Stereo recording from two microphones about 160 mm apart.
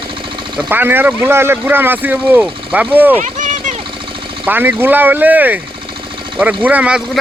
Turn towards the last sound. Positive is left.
turn(degrees=-10)  # may be behind; listen again after turning